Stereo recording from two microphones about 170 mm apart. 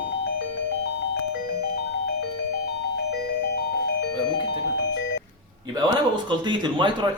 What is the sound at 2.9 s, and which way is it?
Music, 75° left (ahead or behind).